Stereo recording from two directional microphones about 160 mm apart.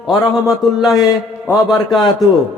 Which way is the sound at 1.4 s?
25° left (ahead or behind).